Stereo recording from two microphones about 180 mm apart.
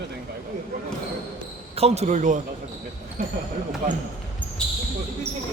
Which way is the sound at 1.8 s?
40° right (ahead or behind).